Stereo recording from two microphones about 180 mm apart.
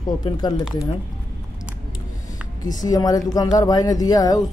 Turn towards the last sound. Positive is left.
turn(degrees=20)  # may be behind; listen again after turning